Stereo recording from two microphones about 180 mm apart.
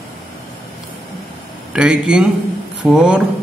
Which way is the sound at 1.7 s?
5° right (ahead or behind).